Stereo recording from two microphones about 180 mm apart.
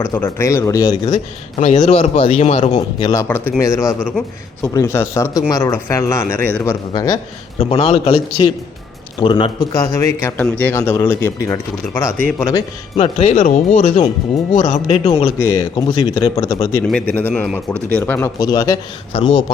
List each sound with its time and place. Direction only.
0.0 s speech: 15° left (ahead or behind)
1.5 s speech: 40° left (ahead or behind)
3.0 s a man's voice: 20° left (ahead or behind)
7.6 s a man's voice: 30° left (ahead or behind)
13.0 s speech: 35° left (ahead or behind)
13.3 s speech: 50° left (ahead or behind)
13.7 s speech: 35° left (ahead or behind)
15.4 s a man's voice: 20° left (ahead or behind)
16.8 s a man's voice: 10° left (ahead or behind); by 19.5 s 30° left (ahead or behind)